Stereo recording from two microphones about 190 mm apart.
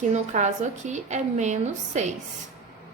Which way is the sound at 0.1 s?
40° right (ahead or behind).